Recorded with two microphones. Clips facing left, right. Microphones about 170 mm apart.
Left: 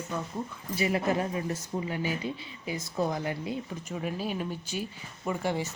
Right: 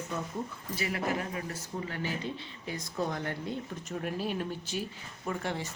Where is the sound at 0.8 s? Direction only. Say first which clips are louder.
Left 5 dB; 25° left (ahead or behind).